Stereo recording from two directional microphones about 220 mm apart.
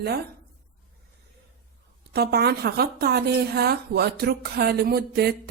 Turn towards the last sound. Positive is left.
turn(degrees=-45)  # may be behind; listen again after turning